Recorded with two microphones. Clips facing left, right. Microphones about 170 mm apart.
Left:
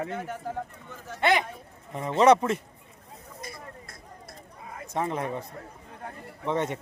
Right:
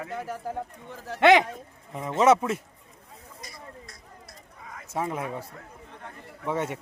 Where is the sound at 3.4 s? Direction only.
55° left (ahead or behind).